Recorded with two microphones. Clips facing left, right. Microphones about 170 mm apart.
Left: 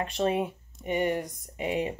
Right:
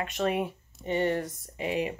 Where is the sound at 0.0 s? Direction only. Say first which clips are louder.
Left 1 dB; 30° left (ahead or behind).